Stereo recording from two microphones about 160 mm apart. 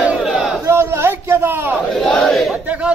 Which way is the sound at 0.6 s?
15° right (ahead or behind).